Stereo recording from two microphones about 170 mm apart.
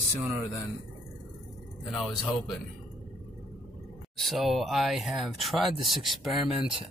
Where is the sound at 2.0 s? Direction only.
Centre (ahead or behind).